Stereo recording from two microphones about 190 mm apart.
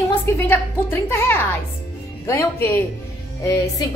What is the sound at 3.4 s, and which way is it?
Music, 20° left (ahead or behind).